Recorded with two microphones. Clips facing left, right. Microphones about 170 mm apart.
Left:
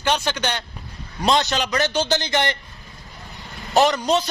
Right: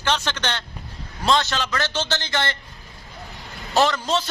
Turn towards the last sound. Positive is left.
turn(degrees=15)  # may be behind; listen again after turning